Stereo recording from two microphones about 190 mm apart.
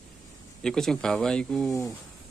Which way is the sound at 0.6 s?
5° left (ahead or behind).